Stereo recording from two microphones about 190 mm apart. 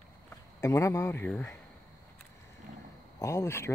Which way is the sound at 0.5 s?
15° left (ahead or behind).